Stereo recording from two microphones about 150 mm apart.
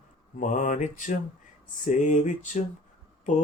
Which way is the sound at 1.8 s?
55° left (ahead or behind).